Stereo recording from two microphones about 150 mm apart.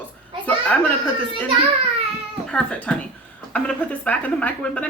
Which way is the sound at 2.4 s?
5° left (ahead or behind).